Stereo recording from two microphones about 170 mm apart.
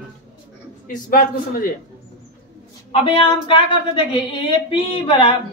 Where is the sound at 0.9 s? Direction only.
55° left (ahead or behind).